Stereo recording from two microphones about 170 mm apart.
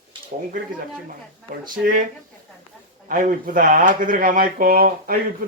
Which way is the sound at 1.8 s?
55° right (ahead or behind).